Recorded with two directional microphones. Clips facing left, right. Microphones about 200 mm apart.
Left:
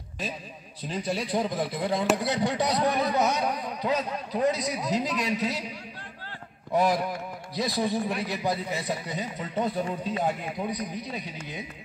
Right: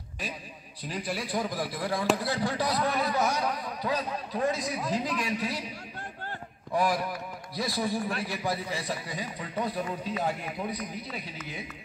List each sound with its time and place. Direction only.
0.8 s a man's voice: 25° left (ahead or behind)
6.7 s a man's voice: 20° left (ahead or behind)